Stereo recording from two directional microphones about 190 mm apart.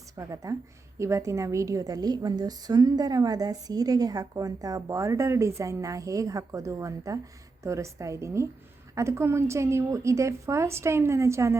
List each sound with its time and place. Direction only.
0.2 s a woman's voice: 15° right (ahead or behind)